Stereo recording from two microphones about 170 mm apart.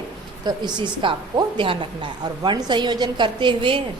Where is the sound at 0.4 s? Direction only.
25° right (ahead or behind).